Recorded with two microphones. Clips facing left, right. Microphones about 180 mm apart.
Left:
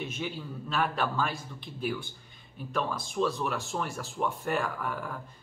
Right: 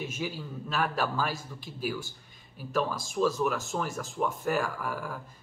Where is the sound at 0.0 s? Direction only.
5° right (ahead or behind).